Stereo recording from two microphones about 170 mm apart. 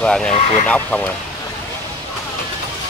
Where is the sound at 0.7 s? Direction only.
10° left (ahead or behind).